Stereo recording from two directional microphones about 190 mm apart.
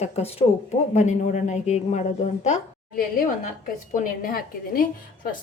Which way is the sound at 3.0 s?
50° left (ahead or behind).